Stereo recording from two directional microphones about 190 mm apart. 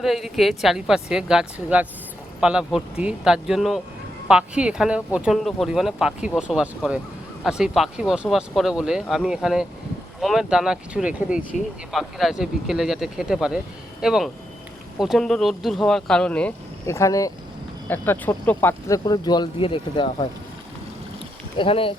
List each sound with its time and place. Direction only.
0.0 s speech: centre (ahead or behind); by 20.2 s 25° left (ahead or behind)
21.6 s speech: 30° left (ahead or behind)